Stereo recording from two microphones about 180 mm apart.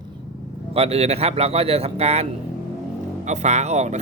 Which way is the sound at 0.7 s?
35° right (ahead or behind).